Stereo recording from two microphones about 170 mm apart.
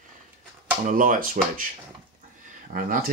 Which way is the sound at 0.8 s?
50° right (ahead or behind).